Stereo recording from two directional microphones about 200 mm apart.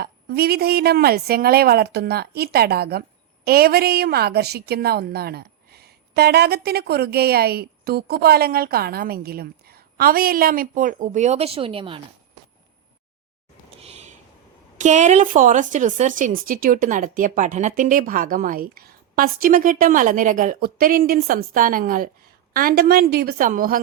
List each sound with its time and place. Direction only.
0.0 s a woman's voice: 50° right (ahead or behind); by 11.9 s 25° right (ahead or behind)
13.8 s a sound: 35° right (ahead or behind)
14.8 s a woman's voice: 35° right (ahead or behind)